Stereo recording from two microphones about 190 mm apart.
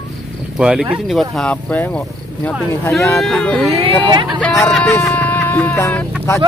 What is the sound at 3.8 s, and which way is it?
Speech, 25° right (ahead or behind).